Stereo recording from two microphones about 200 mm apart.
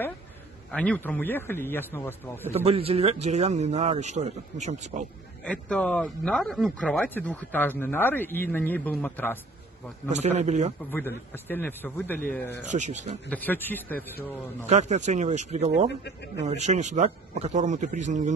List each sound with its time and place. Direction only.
0.7 s speech: 5° left (ahead or behind)
2.5 s speech: 30° right (ahead or behind)
5.4 s speech: 5° left (ahead or behind)
10.0 s speech: 35° right (ahead or behind)
10.9 s speech: 10° left (ahead or behind)
12.7 s speech: 35° right (ahead or behind)
13.3 s speech: 10° left (ahead or behind)
14.7 s speech: 35° right (ahead or behind)